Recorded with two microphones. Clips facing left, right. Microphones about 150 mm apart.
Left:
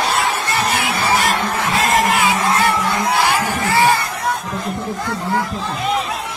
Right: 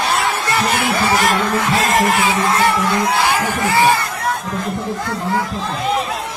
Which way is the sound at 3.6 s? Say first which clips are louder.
Right 1 dB; 20° right (ahead or behind).